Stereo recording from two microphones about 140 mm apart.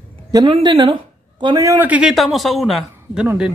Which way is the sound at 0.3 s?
30° right (ahead or behind).